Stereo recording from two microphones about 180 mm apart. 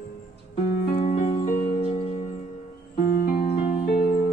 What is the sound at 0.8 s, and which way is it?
Music, 45° left (ahead or behind).